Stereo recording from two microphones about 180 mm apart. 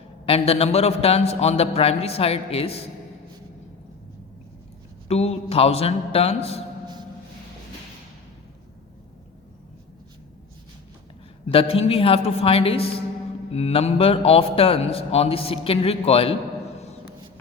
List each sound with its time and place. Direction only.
0.3 s a man's voice: 35° left (ahead or behind)
5.0 s a man's voice: 35° left (ahead or behind)
11.4 s a man's voice: 35° left (ahead or behind)